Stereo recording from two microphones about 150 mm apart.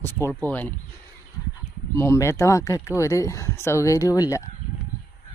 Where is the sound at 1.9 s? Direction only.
20° left (ahead or behind).